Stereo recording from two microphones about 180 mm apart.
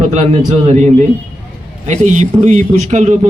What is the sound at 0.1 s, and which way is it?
A man's voice, 35° right (ahead or behind).